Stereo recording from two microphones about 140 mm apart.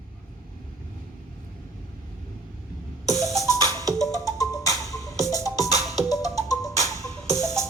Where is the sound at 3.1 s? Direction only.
Centre (ahead or behind).